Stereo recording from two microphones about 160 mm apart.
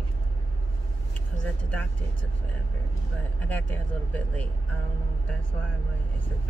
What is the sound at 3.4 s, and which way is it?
Speech, 10° left (ahead or behind).